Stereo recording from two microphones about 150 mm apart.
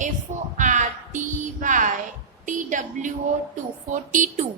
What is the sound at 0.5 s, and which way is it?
Music, 55° right (ahead or behind).